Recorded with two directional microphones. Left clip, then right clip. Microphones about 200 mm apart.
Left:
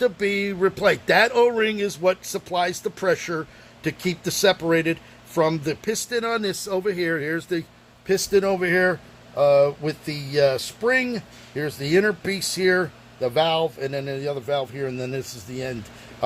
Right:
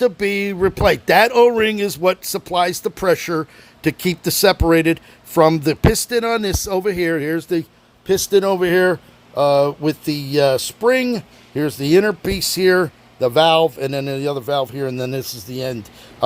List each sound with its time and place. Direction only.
0.0 s speech: 40° right (ahead or behind)
14.9 s speech: 50° right (ahead or behind)